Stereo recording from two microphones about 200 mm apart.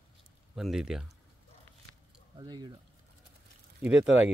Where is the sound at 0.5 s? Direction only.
Centre (ahead or behind).